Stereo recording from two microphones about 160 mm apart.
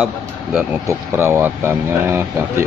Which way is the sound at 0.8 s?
15° right (ahead or behind).